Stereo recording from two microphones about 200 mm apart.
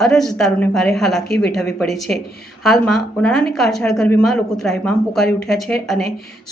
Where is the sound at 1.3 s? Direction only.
55° left (ahead or behind).